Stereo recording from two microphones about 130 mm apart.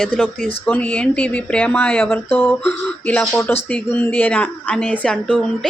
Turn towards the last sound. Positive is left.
turn(degrees=5)  # may be behind; listen again after turning